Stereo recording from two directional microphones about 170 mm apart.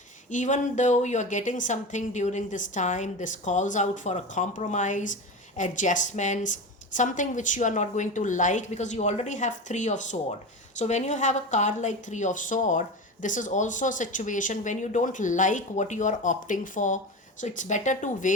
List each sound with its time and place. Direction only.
0.3 s speech: 45° left (ahead or behind)